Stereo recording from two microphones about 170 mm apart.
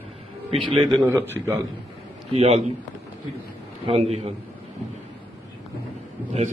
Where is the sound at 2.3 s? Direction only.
35° right (ahead or behind).